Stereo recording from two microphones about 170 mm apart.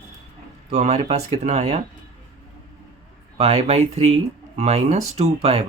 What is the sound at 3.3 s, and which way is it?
Speech, 35° right (ahead or behind).